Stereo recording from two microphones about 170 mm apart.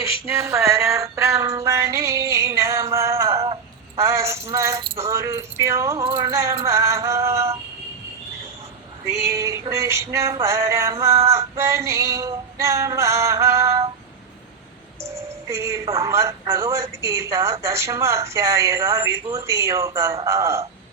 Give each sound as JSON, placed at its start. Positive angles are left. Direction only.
{"t": 0.3, "sound": "a sound", "side_deg": -15}
{"t": 3.9, "sound": "keys jangling", "side_deg": -15}
{"t": 4.5, "sound": "speech", "side_deg": -15}
{"t": 6.7, "sound": "synthetic singing", "side_deg": -15}
{"t": 9.1, "sound": "female singing", "side_deg": -70}
{"t": 9.4, "sound": "speech", "side_deg": -20}
{"t": 15.0, "sound": "speech", "side_deg": -15}